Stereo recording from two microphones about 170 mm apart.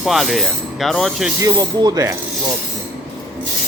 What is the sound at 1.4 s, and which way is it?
Rub, 20° right (ahead or behind).